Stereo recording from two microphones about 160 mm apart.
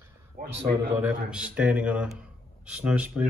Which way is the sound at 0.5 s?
90° right.